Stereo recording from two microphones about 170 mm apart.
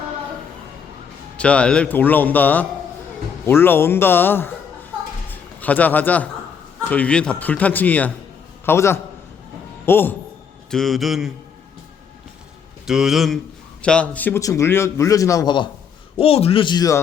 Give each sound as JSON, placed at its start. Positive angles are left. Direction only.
{"t": 1.4, "sound": "a man's voice", "side_deg": 5}
{"t": 5.3, "sound": "a sound", "side_deg": 10}
{"t": 6.9, "sound": "a man's voice", "side_deg": 5}
{"t": 10.7, "sound": "speech", "side_deg": 0}
{"t": 12.8, "sound": "a man's voice", "side_deg": 0}